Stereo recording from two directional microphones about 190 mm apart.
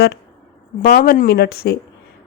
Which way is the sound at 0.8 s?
50° left (ahead or behind).